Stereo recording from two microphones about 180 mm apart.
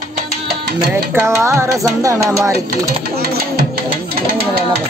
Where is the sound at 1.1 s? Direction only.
15° right (ahead or behind).